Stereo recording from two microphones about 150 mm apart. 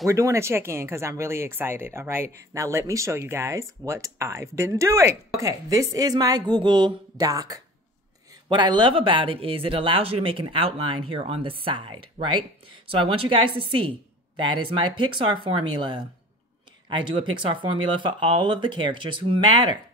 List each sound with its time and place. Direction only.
0.1 s speech: 20° right (ahead or behind)